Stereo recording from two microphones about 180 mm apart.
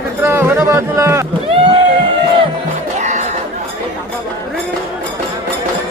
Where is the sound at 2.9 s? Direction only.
40° right (ahead or behind).